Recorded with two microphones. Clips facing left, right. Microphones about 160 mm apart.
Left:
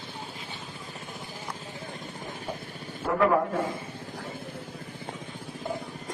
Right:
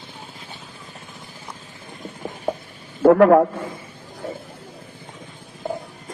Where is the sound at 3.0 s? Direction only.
70° right (ahead or behind).